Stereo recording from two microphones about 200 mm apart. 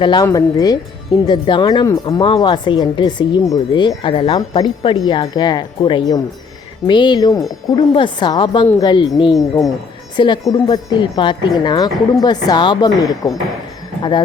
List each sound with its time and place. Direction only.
0.0 s speech: 20° left (ahead or behind)